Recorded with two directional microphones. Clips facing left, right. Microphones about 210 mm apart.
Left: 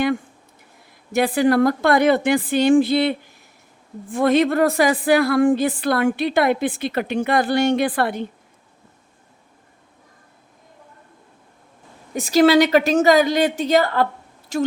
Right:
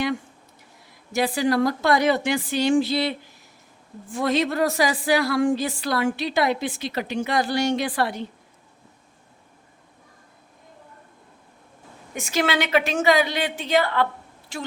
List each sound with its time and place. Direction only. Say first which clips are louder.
1.1 s a woman's voice: left 5 dB; 55° left (ahead or behind)
12.1 s a woman's voice: left 10 dB; 35° left (ahead or behind)